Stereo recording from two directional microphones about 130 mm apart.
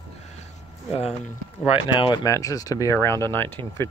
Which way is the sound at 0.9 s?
55° left (ahead or behind).